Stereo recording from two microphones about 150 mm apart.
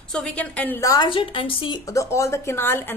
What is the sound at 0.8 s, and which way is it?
Speech, 30° left (ahead or behind).